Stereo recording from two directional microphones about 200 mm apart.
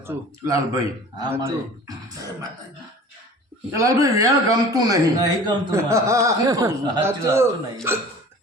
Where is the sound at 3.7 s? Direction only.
15° right (ahead or behind).